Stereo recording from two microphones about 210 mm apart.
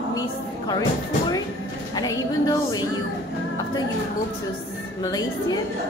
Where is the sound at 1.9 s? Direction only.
15° left (ahead or behind).